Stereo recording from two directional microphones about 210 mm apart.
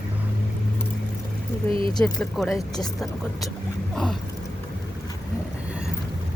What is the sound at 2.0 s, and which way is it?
Speech, centre (ahead or behind).